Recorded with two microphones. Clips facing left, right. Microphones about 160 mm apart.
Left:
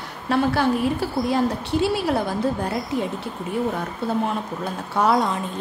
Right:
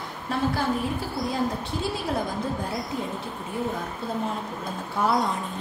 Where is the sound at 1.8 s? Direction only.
70° left (ahead or behind).